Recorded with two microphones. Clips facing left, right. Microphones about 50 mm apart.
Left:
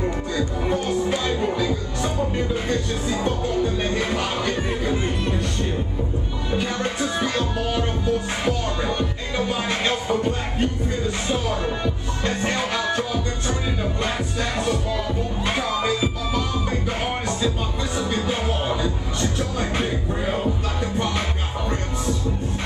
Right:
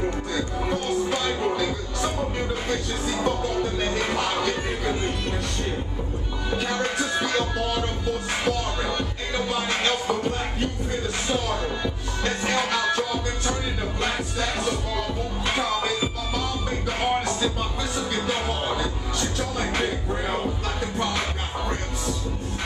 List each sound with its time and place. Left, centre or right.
0.4 s music: centre
4.9 s music: centre
7.2 s music: centre
12.9 s music: centre
14.6 s music: centre
17.9 s music: centre